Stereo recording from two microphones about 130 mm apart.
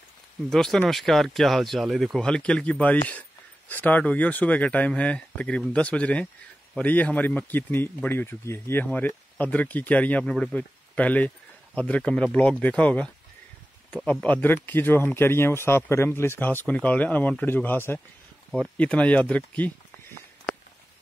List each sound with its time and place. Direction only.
0.5 s speech: 5° left (ahead or behind)
14.2 s speech: 15° left (ahead or behind)